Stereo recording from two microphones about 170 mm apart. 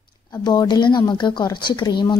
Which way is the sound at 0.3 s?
25° left (ahead or behind).